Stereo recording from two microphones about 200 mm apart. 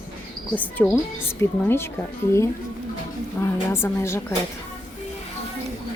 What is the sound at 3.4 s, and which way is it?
Speech, 10° left (ahead or behind).